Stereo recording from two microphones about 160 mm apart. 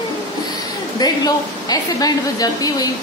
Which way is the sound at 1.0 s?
25° left (ahead or behind).